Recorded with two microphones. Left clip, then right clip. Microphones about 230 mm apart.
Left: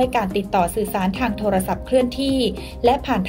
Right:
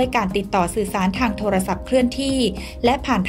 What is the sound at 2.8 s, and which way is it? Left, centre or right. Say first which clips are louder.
Speech: left 1 dB; right.